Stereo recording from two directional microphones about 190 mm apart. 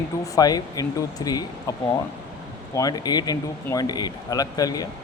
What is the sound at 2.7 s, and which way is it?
Speech, 20° left (ahead or behind).